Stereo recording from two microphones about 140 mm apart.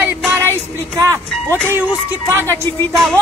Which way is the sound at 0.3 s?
20° right (ahead or behind).